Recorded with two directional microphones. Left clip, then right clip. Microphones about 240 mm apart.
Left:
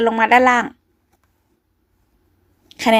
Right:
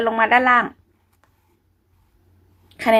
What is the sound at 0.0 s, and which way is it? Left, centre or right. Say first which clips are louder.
Speech: left 3 dB; left.